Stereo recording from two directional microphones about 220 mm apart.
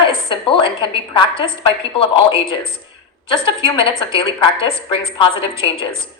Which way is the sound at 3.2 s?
25° left (ahead or behind).